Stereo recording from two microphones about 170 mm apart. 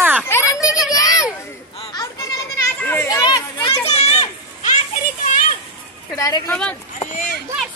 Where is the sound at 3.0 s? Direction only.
25° left (ahead or behind); by 4.7 s 40° left (ahead or behind).